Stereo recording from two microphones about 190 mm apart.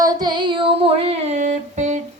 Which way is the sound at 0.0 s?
20° right (ahead or behind).